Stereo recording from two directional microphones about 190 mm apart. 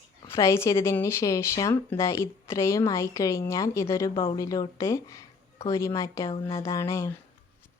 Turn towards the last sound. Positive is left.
turn(degrees=15)  # may be behind; listen again after turning